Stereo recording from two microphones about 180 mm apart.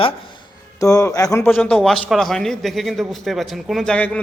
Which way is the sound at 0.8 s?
20° left (ahead or behind).